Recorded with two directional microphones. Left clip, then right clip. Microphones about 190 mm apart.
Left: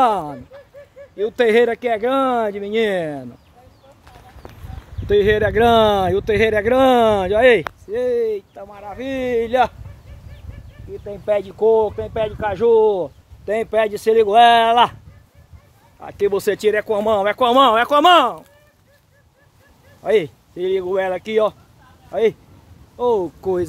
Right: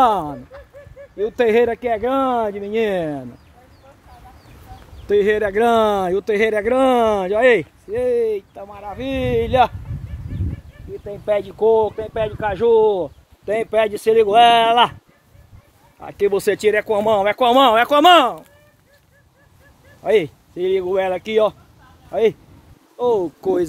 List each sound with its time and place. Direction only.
0.0 s speech: 10° right (ahead or behind)
5.0 s speech: 20° left (ahead or behind)
7.9 s speech: 15° right (ahead or behind)
11.1 s speech: 15° right (ahead or behind); by 15.0 s centre (ahead or behind)
16.0 s speech: centre (ahead or behind)
20.0 s speech: 10° right (ahead or behind)